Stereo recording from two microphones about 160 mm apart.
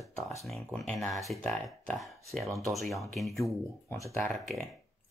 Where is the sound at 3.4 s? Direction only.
15° left (ahead or behind).